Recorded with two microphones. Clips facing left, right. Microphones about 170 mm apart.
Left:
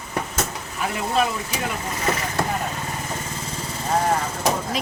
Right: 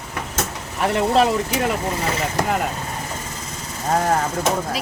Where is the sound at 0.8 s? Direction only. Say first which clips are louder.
Right 6 dB; 70° right (ahead or behind).